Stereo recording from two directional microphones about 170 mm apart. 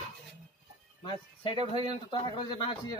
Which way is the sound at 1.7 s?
25° left (ahead or behind).